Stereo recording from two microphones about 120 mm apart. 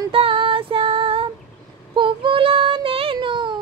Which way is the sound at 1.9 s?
45° right (ahead or behind).